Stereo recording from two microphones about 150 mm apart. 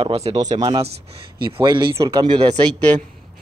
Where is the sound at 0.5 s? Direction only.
30° right (ahead or behind).